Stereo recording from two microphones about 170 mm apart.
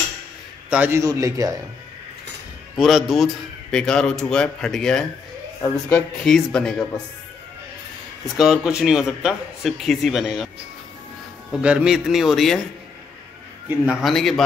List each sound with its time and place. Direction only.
0.7 s a man's voice: 10° right (ahead or behind)
2.8 s a man's voice: centre (ahead or behind)
8.4 s a man's voice: centre (ahead or behind)
11.6 s a man's voice: 5° right (ahead or behind)
13.7 s a man's voice: 5° right (ahead or behind)